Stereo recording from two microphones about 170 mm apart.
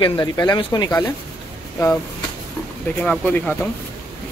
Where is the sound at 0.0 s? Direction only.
20° left (ahead or behind).